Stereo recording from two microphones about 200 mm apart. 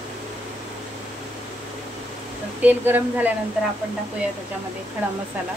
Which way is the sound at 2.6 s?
10° right (ahead or behind).